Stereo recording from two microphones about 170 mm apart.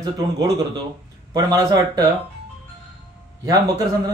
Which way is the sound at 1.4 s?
20° right (ahead or behind).